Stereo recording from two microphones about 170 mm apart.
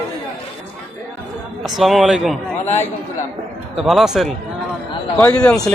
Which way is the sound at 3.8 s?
Centre (ahead or behind).